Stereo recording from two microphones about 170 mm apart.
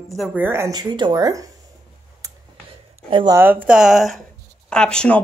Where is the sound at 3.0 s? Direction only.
30° right (ahead or behind).